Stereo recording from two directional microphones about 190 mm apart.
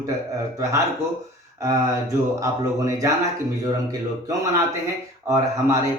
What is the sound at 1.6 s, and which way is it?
A man's voice, 15° right (ahead or behind).